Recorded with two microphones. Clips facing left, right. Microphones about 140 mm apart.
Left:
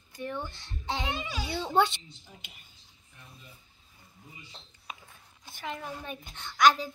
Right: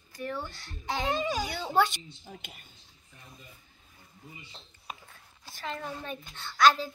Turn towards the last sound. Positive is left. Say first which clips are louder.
# even
turn(degrees=15)  # may be behind; listen again after turning